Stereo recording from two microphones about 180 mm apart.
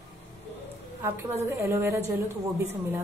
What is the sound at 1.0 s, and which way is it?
A woman's voice, 10° right (ahead or behind).